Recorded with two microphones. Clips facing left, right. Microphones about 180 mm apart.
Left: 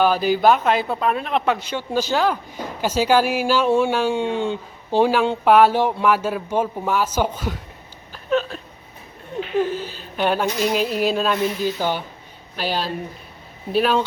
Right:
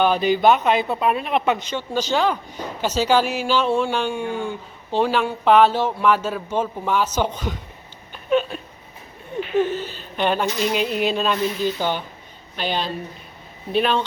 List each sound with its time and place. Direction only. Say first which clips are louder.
0.0 s speech: even; 5° left (ahead or behind)
1.6 s speech: left 1 dB; 10° left (ahead or behind)
4.1 s speech: left 4 dB; 25° left (ahead or behind)
4.9 s speech: left 3 dB; 10° left (ahead or behind)
8.1 s hiccup: right 1 dB; 5° right (ahead or behind)
9.6 s speech: right 1 dB; 10° left (ahead or behind)